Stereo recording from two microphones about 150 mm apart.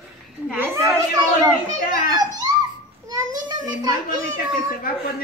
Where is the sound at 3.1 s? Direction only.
25° right (ahead or behind).